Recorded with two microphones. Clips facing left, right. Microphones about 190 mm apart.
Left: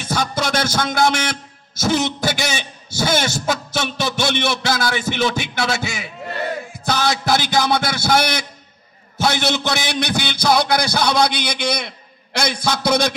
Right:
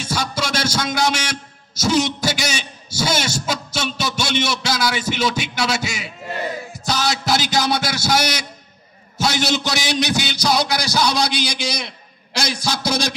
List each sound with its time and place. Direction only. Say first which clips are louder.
0.0 s music: left 2 dB; 55° left (ahead or behind)
6.8 s a man's voice: left 2 dB; 55° left (ahead or behind)